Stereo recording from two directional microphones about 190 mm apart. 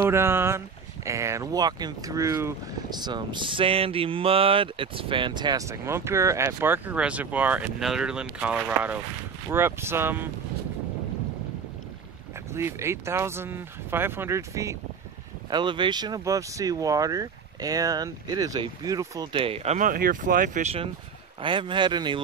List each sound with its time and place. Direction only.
0.0 s speech: 15° right (ahead or behind)
12.5 s speech: 15° right (ahead or behind); by 20.7 s 45° right (ahead or behind)
21.4 s speech: 25° right (ahead or behind)